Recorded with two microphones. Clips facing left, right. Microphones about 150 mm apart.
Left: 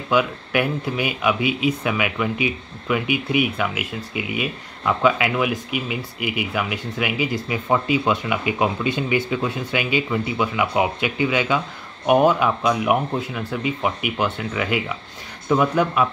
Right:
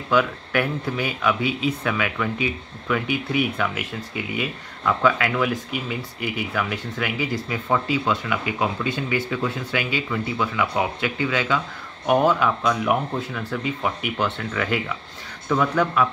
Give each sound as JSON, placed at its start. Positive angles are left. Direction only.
{"t": 0.1, "sound": "speech", "side_deg": 15}